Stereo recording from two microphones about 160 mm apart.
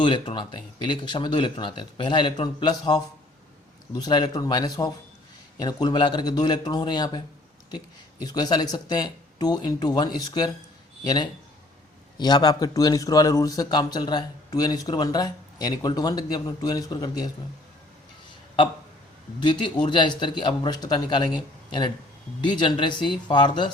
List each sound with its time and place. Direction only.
0.0 s speech: 30° left (ahead or behind)
8.2 s speech: 25° left (ahead or behind)
18.3 s a sound: 30° left (ahead or behind)
19.4 s speech: 30° left (ahead or behind)